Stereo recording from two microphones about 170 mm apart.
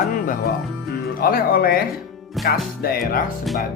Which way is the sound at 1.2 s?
60° left (ahead or behind).